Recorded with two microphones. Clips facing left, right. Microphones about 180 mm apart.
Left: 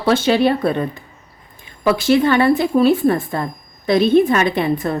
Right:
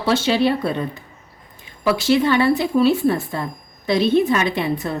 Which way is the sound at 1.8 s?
50° left (ahead or behind).